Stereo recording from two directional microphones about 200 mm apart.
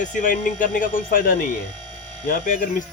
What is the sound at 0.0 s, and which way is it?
Speech, 40° left (ahead or behind).